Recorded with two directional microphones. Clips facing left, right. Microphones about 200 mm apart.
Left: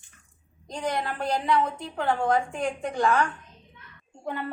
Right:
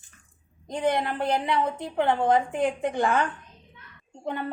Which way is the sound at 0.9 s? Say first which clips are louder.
Right 3 dB; 20° right (ahead or behind).